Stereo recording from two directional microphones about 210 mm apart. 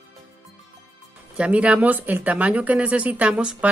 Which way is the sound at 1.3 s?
5° right (ahead or behind).